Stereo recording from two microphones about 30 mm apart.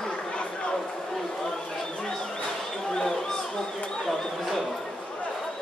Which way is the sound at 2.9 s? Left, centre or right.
Centre.